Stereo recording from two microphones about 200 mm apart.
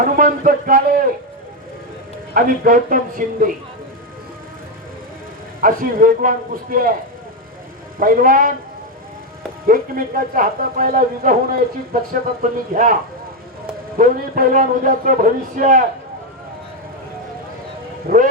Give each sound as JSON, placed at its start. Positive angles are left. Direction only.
{"t": 0.0, "sound": "speech", "side_deg": -45}
{"t": 2.3, "sound": "speech", "side_deg": -45}
{"t": 5.5, "sound": "speech", "side_deg": -45}
{"t": 7.9, "sound": "speech", "side_deg": -45}
{"t": 9.6, "sound": "speech", "side_deg": -45}
{"t": 14.0, "sound": "speech", "side_deg": -40}
{"t": 18.1, "sound": "speech", "side_deg": -45}